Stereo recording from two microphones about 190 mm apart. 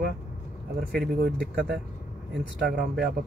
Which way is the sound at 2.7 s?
55° right (ahead or behind).